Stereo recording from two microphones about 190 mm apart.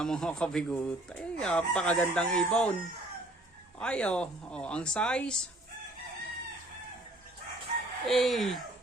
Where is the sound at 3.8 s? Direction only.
5° left (ahead or behind).